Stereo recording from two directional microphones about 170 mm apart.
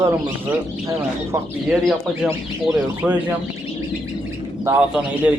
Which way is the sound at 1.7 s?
5° right (ahead or behind).